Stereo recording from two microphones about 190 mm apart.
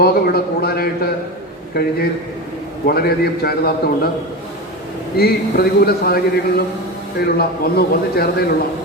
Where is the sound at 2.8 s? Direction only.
55° left (ahead or behind).